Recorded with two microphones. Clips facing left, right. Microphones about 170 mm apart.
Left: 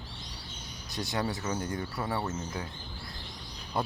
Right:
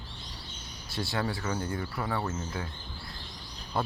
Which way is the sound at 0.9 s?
20° left (ahead or behind).